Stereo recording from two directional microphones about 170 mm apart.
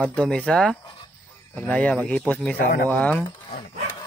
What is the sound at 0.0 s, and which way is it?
Speech, 5° left (ahead or behind).